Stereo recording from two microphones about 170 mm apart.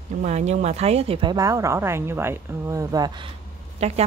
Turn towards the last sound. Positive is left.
turn(degrees=-40)  # may be behind; listen again after turning